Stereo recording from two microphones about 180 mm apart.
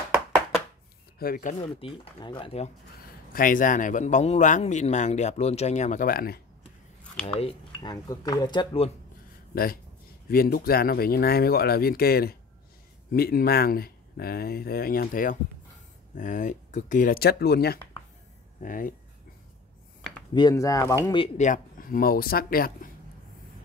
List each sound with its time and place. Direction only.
1.2 s speech: 50° left (ahead or behind)
1.8 s speech: 30° left (ahead or behind)
3.3 s speech: 50° left (ahead or behind)
7.2 s speech: 30° left (ahead or behind)
9.5 s speech: 55° left (ahead or behind)
18.6 s speech: 50° left (ahead or behind)
20.3 s speech: 20° left (ahead or behind)
21.4 s speech: 45° left (ahead or behind)